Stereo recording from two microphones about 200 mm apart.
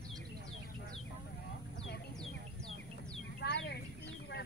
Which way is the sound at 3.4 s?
60° left (ahead or behind).